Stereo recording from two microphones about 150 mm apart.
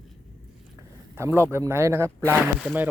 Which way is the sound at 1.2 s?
15° right (ahead or behind).